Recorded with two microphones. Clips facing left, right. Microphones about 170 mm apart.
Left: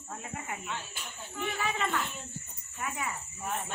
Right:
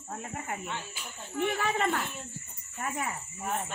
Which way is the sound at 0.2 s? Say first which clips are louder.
Right 3 dB; 40° right (ahead or behind).